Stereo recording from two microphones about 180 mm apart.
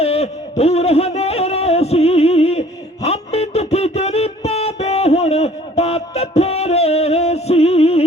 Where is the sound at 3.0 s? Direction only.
35° left (ahead or behind).